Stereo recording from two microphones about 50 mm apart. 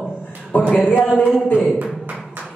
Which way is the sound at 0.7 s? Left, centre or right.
Left.